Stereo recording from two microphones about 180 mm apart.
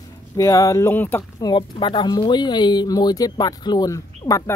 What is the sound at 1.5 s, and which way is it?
Speech, 25° left (ahead or behind).